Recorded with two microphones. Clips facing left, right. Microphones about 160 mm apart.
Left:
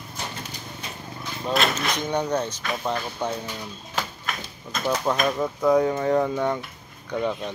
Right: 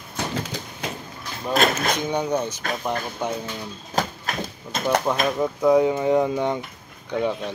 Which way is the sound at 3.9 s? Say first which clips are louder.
Right 5 dB; 40° right (ahead or behind).